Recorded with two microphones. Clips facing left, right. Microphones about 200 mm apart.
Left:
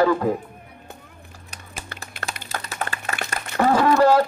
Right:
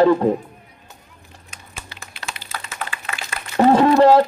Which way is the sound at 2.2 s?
40° left (ahead or behind).